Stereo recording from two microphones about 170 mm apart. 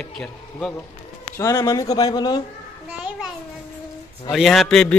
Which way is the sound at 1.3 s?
20° left (ahead or behind).